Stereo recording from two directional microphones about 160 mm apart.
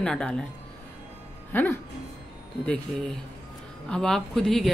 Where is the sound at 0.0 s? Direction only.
5° left (ahead or behind).